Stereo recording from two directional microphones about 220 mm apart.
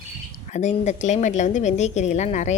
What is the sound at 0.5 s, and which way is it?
A woman's voice, 30° left (ahead or behind).